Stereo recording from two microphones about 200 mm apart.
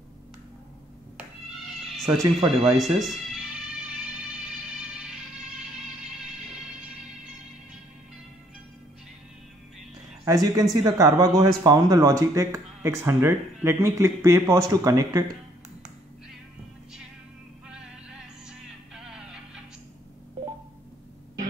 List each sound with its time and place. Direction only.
2.0 s music: centre (ahead or behind)
10.2 s speech: 20° right (ahead or behind)
17.6 s music: 5° right (ahead or behind)